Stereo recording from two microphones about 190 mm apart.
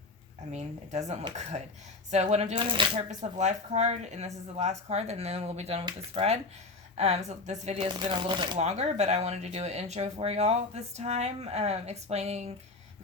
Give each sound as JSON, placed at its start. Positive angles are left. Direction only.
{"t": 0.5, "sound": "speech", "side_deg": -40}
{"t": 3.3, "sound": "speech", "side_deg": -35}
{"t": 8.6, "sound": "speech", "side_deg": -35}